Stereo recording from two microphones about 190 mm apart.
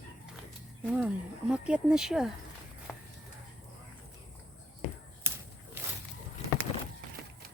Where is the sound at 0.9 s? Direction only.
5° right (ahead or behind).